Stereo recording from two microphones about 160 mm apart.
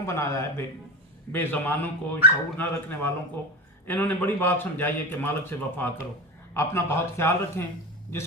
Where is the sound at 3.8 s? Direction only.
10° left (ahead or behind).